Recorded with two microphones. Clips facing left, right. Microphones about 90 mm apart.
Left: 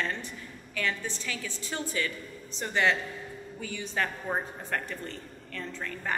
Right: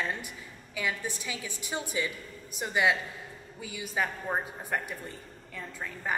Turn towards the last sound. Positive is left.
turn(degrees=-10)  # may be behind; listen again after turning